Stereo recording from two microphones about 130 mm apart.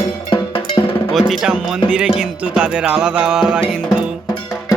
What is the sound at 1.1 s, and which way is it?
Music, centre (ahead or behind).